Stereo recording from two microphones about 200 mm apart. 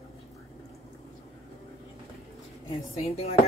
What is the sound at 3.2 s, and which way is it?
Speech, 30° left (ahead or behind).